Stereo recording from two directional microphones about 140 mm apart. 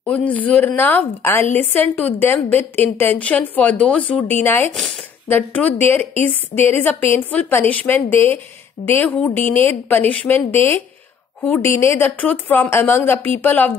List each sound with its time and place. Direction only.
0.0 s a woman's voice: 10° left (ahead or behind)